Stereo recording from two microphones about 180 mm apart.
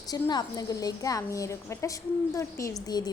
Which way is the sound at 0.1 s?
20° left (ahead or behind).